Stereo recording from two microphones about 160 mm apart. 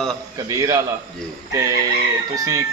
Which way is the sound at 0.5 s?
20° right (ahead or behind).